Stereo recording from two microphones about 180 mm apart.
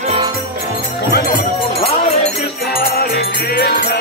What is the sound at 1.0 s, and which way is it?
Music, 60° left (ahead or behind).